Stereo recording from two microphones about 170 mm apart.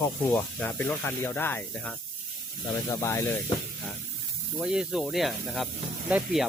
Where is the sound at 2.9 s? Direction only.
20° left (ahead or behind).